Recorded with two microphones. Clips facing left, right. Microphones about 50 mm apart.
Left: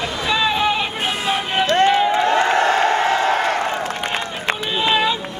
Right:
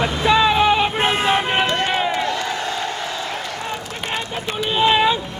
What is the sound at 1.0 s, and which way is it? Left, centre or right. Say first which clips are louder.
Vehicle: right 3 dB; right.